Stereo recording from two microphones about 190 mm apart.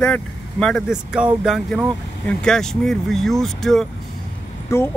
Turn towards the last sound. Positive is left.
turn(degrees=15)  # may be behind; listen again after turning